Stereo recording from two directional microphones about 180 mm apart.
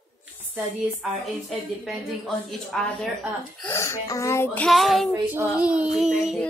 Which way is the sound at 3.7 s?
15° left (ahead or behind).